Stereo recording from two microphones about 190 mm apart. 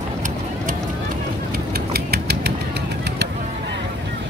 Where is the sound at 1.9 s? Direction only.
55° right (ahead or behind).